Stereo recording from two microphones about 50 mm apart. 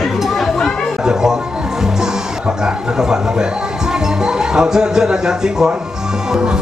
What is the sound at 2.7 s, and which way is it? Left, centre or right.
Speech, centre.